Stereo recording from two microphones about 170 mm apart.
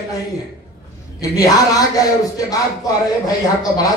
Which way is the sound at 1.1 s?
20° left (ahead or behind).